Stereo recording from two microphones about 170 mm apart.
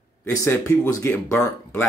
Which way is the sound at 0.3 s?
20° left (ahead or behind).